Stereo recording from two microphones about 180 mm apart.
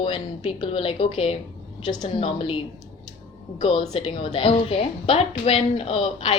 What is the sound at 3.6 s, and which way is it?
A woman's voice, 30° left (ahead or behind).